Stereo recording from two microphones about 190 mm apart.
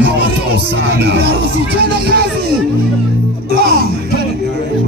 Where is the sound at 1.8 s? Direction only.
60° right (ahead or behind).